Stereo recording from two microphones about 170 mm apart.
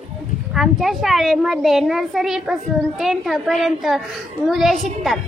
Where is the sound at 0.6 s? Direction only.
Centre (ahead or behind).